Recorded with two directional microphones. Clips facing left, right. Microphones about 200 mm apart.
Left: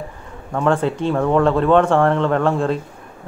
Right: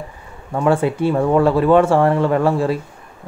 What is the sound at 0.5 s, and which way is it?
A man's voice, 10° right (ahead or behind).